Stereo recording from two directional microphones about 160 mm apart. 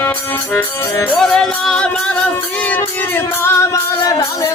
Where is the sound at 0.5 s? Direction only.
10° left (ahead or behind).